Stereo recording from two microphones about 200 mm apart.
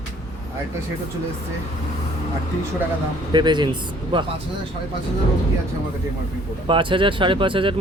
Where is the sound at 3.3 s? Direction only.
20° right (ahead or behind).